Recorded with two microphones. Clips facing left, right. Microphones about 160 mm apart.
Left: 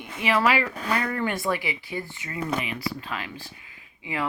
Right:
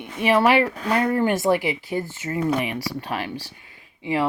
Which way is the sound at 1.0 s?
40° right (ahead or behind).